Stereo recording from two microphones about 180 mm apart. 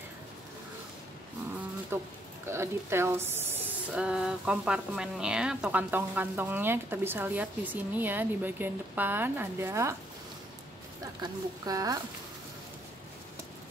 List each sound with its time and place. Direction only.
1.9 s a woman's voice: 15° right (ahead or behind)
11.2 s speech: 20° right (ahead or behind)